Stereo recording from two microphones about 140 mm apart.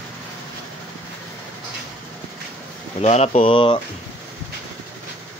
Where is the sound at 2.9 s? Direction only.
45° left (ahead or behind).